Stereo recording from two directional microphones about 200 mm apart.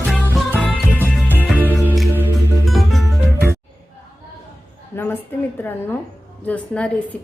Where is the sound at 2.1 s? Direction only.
5° right (ahead or behind).